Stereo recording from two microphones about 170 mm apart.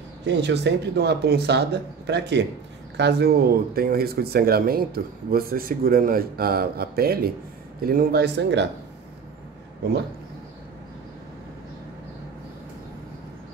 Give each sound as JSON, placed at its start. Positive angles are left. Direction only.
{"t": 0.2, "sound": "speech", "side_deg": -90}
{"t": 3.0, "sound": "speech", "side_deg": -75}